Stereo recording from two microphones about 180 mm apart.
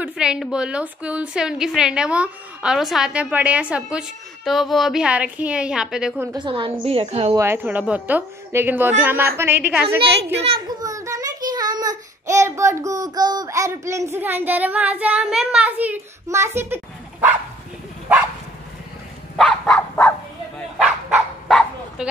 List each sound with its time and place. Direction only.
0.0 s a woman's voice: 5° right (ahead or behind)
6.2 s a woman's voice: 25° right (ahead or behind)
7.3 s a woman's voice: 15° right (ahead or behind)
10.8 s child singing: 20° right (ahead or behind)
19.3 s dog: 5° left (ahead or behind)
20.7 s dog: centre (ahead or behind)